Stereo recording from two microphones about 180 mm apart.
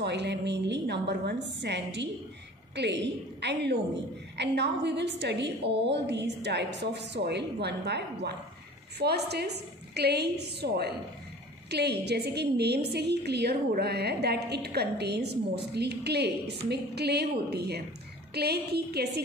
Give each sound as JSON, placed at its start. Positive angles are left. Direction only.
{"t": 0.0, "sound": "a woman's voice", "side_deg": -70}